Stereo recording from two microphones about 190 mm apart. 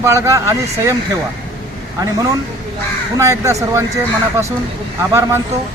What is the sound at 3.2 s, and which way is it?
Speech, 15° right (ahead or behind).